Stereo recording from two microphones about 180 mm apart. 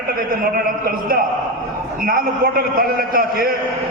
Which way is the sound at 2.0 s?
55° right (ahead or behind).